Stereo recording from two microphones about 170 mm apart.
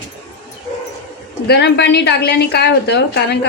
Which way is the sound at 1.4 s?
75° left (ahead or behind).